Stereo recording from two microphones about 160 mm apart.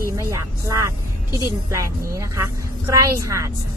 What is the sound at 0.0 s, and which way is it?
Speech, 20° right (ahead or behind).